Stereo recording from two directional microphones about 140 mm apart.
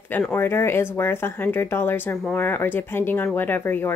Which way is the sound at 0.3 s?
15° left (ahead or behind).